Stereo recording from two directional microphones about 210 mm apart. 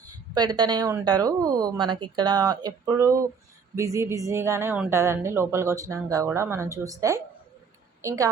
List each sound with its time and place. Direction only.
0.3 s a woman's voice: 20° right (ahead or behind)